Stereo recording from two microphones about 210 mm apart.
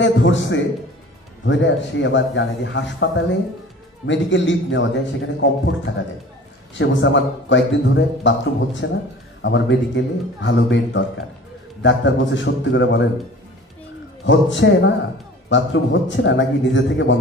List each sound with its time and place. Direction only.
0.0 s a man's voice: 65° left (ahead or behind)
14.2 s a man's voice: 60° left (ahead or behind)